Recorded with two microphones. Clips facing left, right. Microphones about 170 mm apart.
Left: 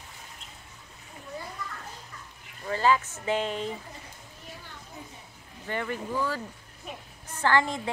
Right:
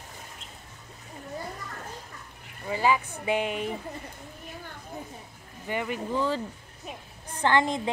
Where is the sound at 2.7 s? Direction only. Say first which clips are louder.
Left 1 dB; 15° right (ahead or behind).